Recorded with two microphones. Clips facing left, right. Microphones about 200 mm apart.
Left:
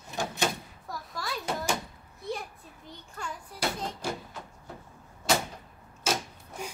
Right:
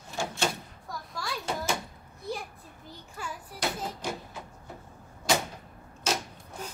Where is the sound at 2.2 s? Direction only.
Centre (ahead or behind).